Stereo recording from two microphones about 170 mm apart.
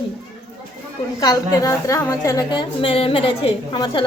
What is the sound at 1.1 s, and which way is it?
A woman's voice, 20° left (ahead or behind).